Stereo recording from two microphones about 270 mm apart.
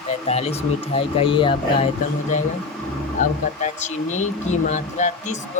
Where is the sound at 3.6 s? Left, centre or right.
Left.